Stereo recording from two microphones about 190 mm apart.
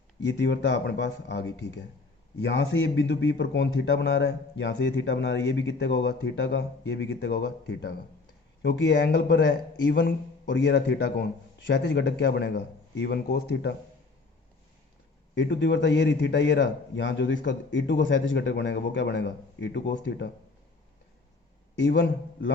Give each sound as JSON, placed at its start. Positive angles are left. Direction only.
{"t": 0.2, "sound": "a man's voice", "side_deg": 65}
{"t": 15.4, "sound": "a man's voice", "side_deg": 70}
{"t": 21.8, "sound": "a man's voice", "side_deg": 70}